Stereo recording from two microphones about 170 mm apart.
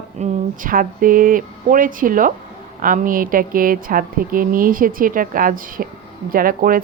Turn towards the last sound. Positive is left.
turn(degrees=-55)  # may be behind; listen again after turning